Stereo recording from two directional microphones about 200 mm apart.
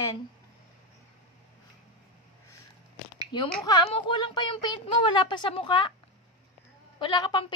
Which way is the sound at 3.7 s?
25° left (ahead or behind).